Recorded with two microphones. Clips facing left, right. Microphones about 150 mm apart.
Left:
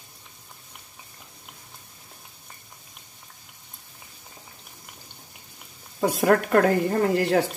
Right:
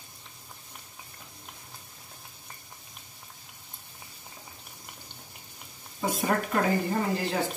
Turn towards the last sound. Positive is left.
turn(degrees=70)  # may be behind; listen again after turning